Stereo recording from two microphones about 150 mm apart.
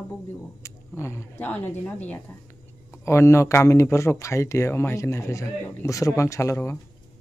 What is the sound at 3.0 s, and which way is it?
A man's voice, 20° left (ahead or behind).